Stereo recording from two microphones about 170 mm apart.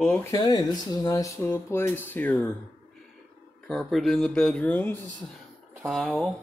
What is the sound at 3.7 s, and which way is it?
Speech, centre (ahead or behind).